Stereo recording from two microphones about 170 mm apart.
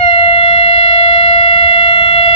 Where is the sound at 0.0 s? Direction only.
35° left (ahead or behind).